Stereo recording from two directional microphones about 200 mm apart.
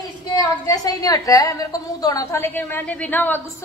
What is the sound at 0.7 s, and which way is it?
A woman's voice, 20° left (ahead or behind).